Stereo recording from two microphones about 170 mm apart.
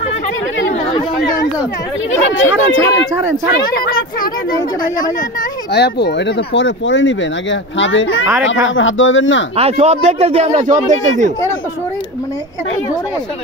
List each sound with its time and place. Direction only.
2.3 s speech: 90° left
3.7 s speech: 65° left (ahead or behind)
5.7 s speech: 80° left
9.6 s speech: 40° right (ahead or behind)